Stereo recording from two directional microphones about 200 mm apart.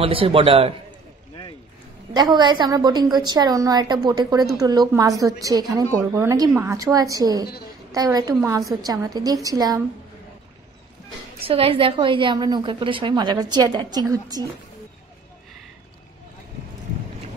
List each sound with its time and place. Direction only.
0.0 s a woman's voice: 25° right (ahead or behind)
2.1 s a woman's voice: 20° right (ahead or behind)
11.4 s a woman's voice: 30° right (ahead or behind)